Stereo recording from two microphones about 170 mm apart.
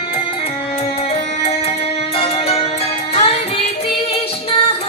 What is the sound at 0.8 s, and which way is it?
Music, 35° left (ahead or behind).